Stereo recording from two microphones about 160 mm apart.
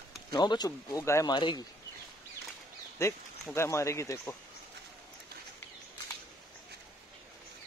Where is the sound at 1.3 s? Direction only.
30° left (ahead or behind).